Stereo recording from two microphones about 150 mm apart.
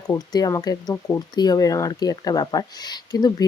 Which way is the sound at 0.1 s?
25° left (ahead or behind).